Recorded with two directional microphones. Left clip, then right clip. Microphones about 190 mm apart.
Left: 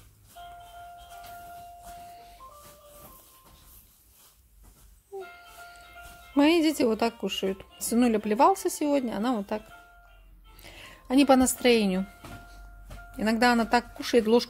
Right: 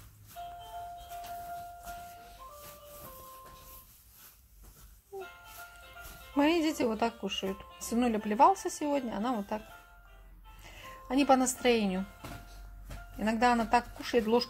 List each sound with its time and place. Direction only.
6.3 s speech: 30° left (ahead or behind)
10.6 s music: 35° left (ahead or behind)
11.6 s speech: 40° left (ahead or behind)
13.2 s speech: 35° left (ahead or behind)